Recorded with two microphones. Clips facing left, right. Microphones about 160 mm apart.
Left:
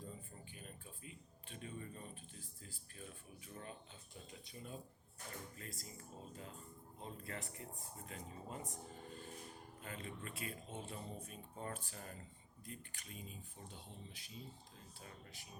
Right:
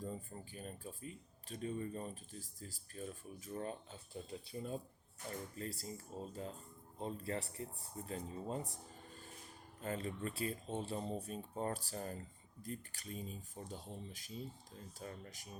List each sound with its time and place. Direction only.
0.0 s speech: 40° right (ahead or behind)
9.8 s speech: 40° right (ahead or behind)